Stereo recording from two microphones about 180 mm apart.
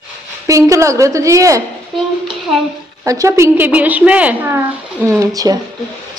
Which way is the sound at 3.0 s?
15° right (ahead or behind).